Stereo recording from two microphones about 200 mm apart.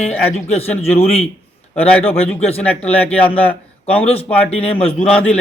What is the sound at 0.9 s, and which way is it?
Speech, 30° left (ahead or behind).